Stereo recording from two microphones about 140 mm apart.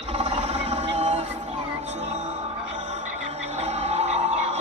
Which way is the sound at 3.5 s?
50° right (ahead or behind).